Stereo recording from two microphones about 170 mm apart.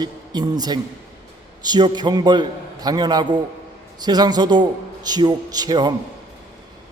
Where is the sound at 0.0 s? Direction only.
25° right (ahead or behind).